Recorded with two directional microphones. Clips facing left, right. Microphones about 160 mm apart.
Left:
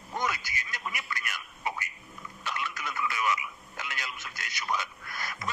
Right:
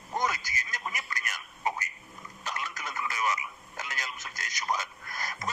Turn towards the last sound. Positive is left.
turn(degrees=-40)  # may be behind; listen again after turning